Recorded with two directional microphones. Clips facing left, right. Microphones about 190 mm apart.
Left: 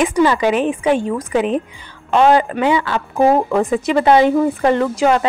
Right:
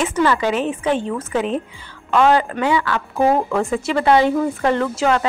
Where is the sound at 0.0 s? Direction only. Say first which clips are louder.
Left 4 dB; 15° left (ahead or behind).